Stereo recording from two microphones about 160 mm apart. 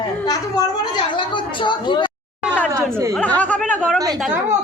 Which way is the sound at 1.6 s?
30° left (ahead or behind).